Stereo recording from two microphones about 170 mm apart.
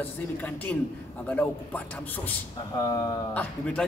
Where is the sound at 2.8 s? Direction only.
25° left (ahead or behind).